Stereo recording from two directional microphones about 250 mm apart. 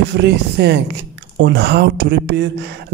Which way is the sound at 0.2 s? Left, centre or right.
Right.